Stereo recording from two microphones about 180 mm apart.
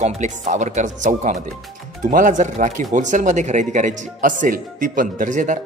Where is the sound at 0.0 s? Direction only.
40° right (ahead or behind).